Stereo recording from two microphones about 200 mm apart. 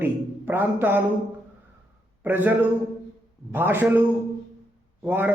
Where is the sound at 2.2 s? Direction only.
10° right (ahead or behind).